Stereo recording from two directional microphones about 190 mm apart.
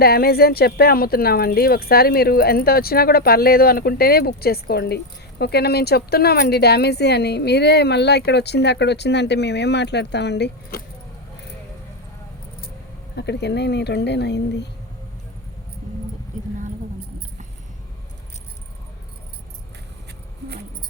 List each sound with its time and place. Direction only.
0.0 s speech: 55° left (ahead or behind)
13.1 s speech: 60° left (ahead or behind)